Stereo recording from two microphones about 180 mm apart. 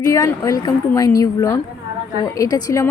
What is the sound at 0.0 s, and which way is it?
A woman's voice, 15° left (ahead or behind).